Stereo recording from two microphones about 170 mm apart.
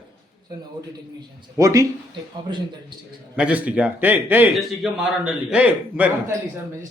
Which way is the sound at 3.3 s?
5° right (ahead or behind).